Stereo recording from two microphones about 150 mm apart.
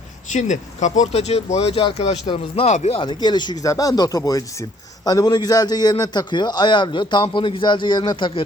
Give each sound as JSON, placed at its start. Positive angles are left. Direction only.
{"t": 0.3, "sound": "a man's voice", "side_deg": 55}